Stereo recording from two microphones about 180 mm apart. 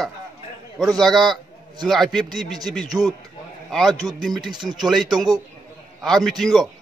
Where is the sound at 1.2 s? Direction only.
25° right (ahead or behind).